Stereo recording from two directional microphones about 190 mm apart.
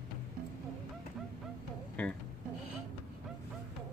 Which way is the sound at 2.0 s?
5° left (ahead or behind).